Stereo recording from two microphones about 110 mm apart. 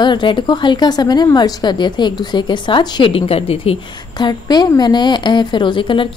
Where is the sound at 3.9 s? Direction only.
40° left (ahead or behind).